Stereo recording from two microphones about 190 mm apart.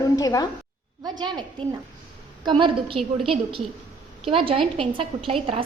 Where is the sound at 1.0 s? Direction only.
20° right (ahead or behind).